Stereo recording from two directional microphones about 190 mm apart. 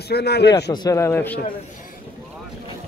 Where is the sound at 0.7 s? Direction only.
15° left (ahead or behind).